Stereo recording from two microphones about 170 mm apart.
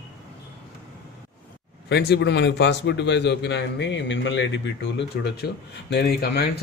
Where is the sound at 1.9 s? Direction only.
75° left (ahead or behind).